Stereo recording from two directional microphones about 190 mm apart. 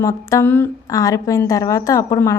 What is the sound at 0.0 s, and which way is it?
Speech, 15° left (ahead or behind).